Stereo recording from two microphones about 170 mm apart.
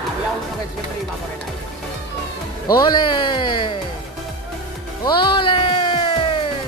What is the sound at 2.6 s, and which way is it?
Speech, 25° left (ahead or behind).